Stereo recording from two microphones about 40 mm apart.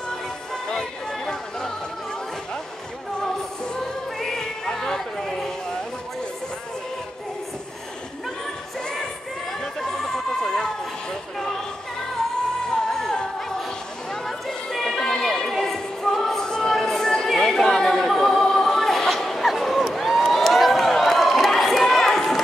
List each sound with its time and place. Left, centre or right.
0.7 s chatter: centre
3.2 s music: left
9.6 s chatter: centre
12.7 s music: centre
14.1 s a sound: centre
15.5 s music: centre
16.4 s music: centre
17.4 s a sound: centre
18.0 s music: centre
20.3 s a sound: centre